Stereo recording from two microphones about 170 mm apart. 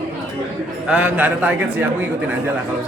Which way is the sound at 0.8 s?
10° right (ahead or behind).